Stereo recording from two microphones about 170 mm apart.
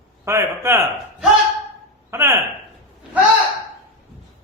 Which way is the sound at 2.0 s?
15° right (ahead or behind).